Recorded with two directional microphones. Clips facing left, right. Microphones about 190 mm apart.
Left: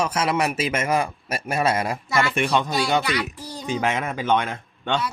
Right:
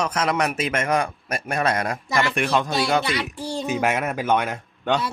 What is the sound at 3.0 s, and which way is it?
Speech, 25° right (ahead or behind).